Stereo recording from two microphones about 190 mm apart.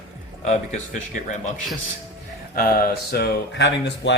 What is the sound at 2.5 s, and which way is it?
Speech, 50° left (ahead or behind).